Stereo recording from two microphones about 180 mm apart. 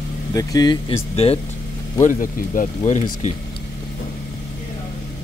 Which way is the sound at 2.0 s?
45° left (ahead or behind).